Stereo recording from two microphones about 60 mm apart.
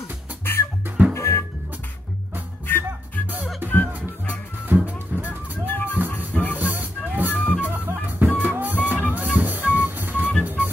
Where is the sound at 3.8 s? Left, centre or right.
Right.